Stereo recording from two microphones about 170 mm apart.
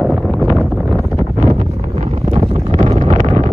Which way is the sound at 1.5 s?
40° right (ahead or behind).